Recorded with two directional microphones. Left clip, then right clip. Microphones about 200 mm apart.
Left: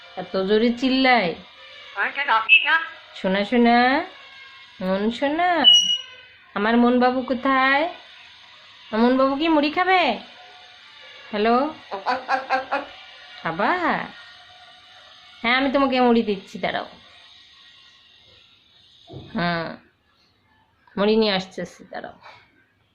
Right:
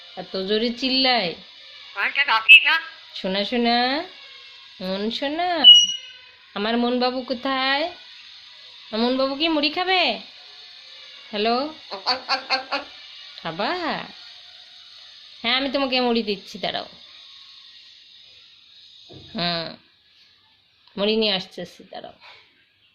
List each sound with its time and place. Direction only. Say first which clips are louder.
0.3 s speech: left 3 dB; 25° right (ahead or behind)
2.0 s music: even; 10° right (ahead or behind)
3.2 s speech: left 3 dB; 25° right (ahead or behind)
8.9 s speech: left 3 dB; 20° right (ahead or behind)
11.3 s speech: left 3 dB; 25° right (ahead or behind)
11.9 s music: left 1 dB; 10° right (ahead or behind)
13.4 s speech: left 4 dB; 25° right (ahead or behind)
15.4 s speech: left 3 dB; 25° right (ahead or behind)
19.3 s dog: left 1 dB; 20° right (ahead or behind)
20.9 s speech: left 2 dB; 20° right (ahead or behind)